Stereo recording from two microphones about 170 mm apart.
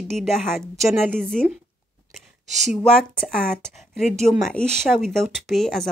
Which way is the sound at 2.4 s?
45° right (ahead or behind).